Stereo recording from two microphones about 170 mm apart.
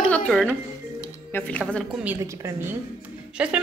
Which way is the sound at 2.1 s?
15° right (ahead or behind).